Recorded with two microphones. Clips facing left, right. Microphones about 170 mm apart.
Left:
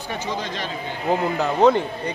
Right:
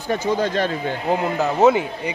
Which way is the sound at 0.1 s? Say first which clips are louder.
Right 8 dB; 50° right (ahead or behind).